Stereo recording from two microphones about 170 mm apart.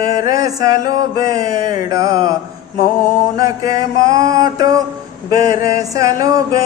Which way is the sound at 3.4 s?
20° right (ahead or behind).